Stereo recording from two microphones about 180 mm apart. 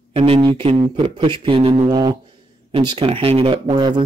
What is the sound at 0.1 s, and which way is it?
Speech, 35° right (ahead or behind).